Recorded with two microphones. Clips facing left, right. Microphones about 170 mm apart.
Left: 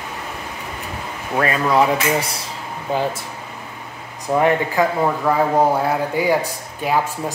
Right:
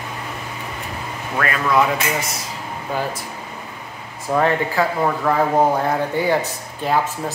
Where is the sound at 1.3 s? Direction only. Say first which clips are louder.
Left 2 dB; 30° left (ahead or behind).